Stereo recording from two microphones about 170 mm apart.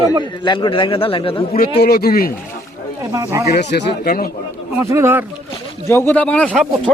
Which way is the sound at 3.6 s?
75° left (ahead or behind).